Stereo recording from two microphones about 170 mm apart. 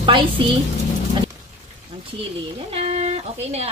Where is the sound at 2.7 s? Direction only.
40° right (ahead or behind).